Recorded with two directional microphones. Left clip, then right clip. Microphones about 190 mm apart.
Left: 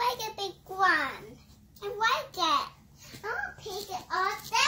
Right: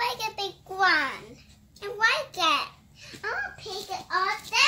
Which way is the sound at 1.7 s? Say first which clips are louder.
Right 3 dB; 25° right (ahead or behind).